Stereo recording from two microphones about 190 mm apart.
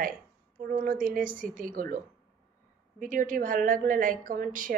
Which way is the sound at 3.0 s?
45° right (ahead or behind).